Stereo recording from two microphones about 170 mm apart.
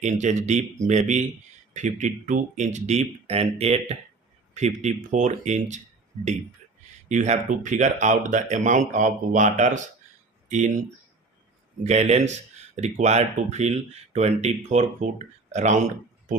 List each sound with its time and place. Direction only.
0.0 s speech: 45° right (ahead or behind)
7.1 s speech: 45° right (ahead or behind)
11.8 s speech: 40° right (ahead or behind)